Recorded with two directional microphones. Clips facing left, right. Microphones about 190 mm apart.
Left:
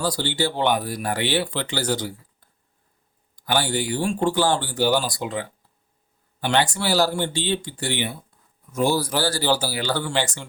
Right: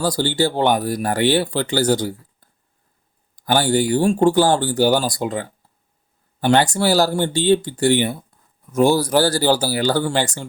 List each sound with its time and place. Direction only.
0.0 s speech: 40° right (ahead or behind)